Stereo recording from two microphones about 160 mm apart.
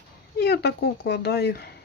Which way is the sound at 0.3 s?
90° left.